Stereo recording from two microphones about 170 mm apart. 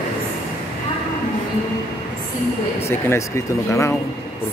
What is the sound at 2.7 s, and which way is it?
Speech, 15° left (ahead or behind).